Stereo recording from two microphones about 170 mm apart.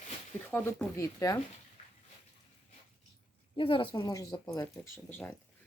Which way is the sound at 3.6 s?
30° left (ahead or behind).